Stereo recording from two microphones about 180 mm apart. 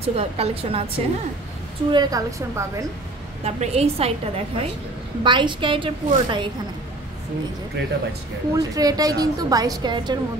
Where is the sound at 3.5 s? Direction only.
35° right (ahead or behind).